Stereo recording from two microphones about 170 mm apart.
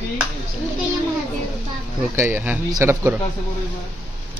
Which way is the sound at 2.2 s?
15° right (ahead or behind).